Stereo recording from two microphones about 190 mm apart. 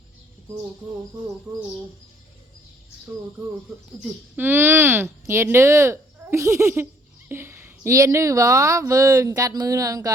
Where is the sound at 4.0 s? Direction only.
10° right (ahead or behind).